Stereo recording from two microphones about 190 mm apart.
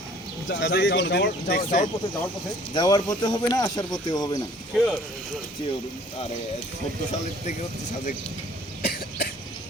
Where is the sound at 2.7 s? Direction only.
20° left (ahead or behind).